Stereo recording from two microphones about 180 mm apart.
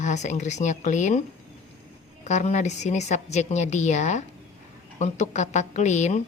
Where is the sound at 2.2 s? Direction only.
40° left (ahead or behind).